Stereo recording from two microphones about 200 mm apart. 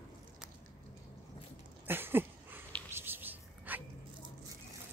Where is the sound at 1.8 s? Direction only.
10° right (ahead or behind).